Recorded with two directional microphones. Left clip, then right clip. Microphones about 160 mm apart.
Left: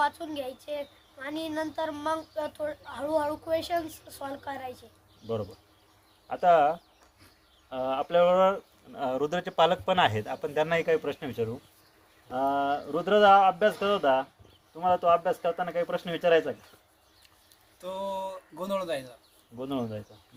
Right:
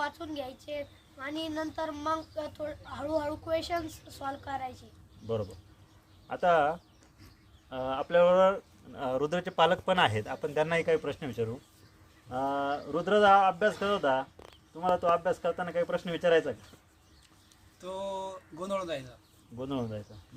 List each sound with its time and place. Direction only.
0.0 s a woman's voice: 15° left (ahead or behind)
6.2 s speech: 25° right (ahead or behind)
17.8 s speech: 10° left (ahead or behind)
19.5 s speech: 20° right (ahead or behind)